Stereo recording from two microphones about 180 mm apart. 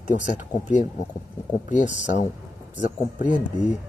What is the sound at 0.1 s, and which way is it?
Speech, 45° left (ahead or behind).